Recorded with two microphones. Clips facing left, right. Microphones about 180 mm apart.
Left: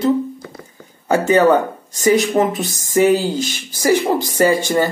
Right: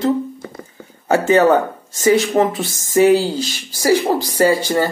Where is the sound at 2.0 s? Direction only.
15° left (ahead or behind).